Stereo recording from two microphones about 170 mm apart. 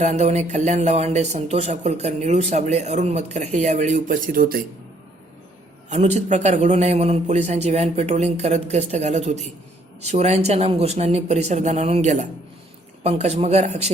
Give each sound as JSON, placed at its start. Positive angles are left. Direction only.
{"t": 0.0, "sound": "speech", "side_deg": -40}
{"t": 5.9, "sound": "a man's voice", "side_deg": -40}